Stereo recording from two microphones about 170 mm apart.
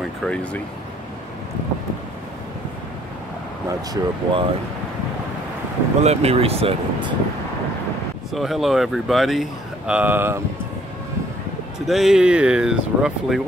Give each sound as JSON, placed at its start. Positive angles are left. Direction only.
{"t": 0.2, "sound": "speech", "side_deg": 5}
{"t": 3.6, "sound": "speech", "side_deg": -25}
{"t": 6.0, "sound": "speech", "side_deg": -35}
{"t": 8.3, "sound": "speech", "side_deg": 0}
{"t": 11.8, "sound": "speech", "side_deg": 0}